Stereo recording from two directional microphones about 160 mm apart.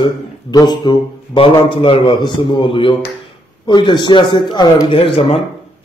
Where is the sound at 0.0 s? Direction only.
25° left (ahead or behind).